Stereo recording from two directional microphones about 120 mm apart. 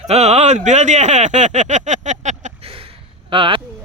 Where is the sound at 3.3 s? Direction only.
50° right (ahead or behind).